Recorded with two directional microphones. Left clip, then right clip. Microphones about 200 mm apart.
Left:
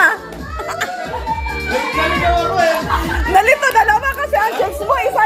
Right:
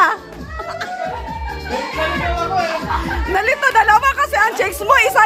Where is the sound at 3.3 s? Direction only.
10° right (ahead or behind).